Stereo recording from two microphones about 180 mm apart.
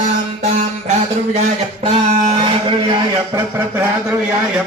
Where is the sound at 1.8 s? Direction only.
40° right (ahead or behind).